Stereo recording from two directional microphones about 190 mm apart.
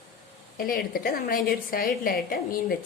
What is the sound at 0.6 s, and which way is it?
A woman's voice, 50° left (ahead or behind).